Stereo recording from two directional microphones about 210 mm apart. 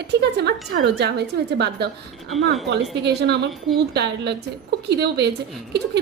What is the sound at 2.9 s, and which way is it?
A woman's voice, 55° right (ahead or behind).